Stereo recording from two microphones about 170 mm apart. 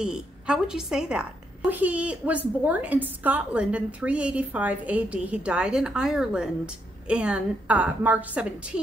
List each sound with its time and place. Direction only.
0.0 s a woman's voice: 5° right (ahead or behind)